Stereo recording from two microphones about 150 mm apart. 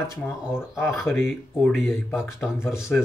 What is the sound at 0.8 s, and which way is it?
Speech, 20° left (ahead or behind).